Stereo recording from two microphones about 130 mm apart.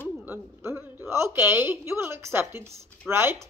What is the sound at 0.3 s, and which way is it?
A woman's voice, 20° right (ahead or behind).